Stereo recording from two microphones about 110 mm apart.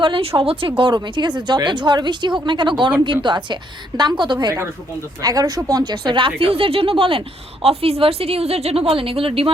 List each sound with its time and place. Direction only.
0.0 s a woman's voice: 55° right (ahead or behind)